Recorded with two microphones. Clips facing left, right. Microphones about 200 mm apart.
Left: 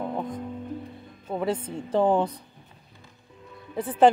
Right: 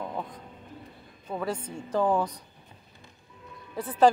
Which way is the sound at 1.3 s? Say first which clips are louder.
Left 4 dB; 25° left (ahead or behind).